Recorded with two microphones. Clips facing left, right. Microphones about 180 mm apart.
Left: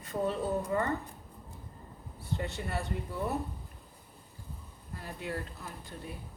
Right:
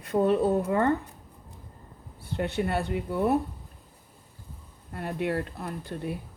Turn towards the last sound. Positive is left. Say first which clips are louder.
# right 10 dB
turn(degrees=-65)  # may be behind; listen again after turning